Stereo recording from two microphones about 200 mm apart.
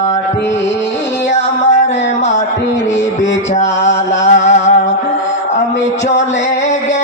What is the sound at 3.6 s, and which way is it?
Music, 35° left (ahead or behind).